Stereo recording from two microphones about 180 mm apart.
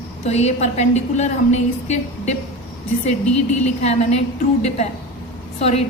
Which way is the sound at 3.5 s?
40° left (ahead or behind).